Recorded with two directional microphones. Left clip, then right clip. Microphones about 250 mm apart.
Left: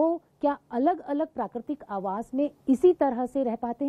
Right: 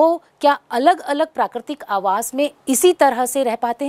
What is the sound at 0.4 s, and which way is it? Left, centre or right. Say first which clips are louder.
A woman's voice: right 11 dB; centre.